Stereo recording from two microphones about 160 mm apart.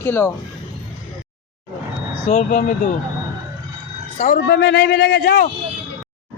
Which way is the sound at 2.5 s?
55° left (ahead or behind).